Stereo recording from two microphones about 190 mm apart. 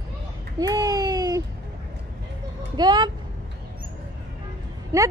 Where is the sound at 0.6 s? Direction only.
20° right (ahead or behind).